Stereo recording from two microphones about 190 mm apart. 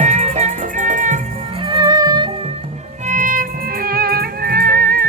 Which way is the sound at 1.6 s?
25° right (ahead or behind).